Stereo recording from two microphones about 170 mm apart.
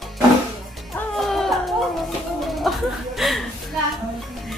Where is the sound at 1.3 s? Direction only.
Centre (ahead or behind).